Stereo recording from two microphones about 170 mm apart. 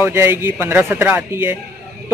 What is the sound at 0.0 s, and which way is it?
A man's voice, 15° right (ahead or behind).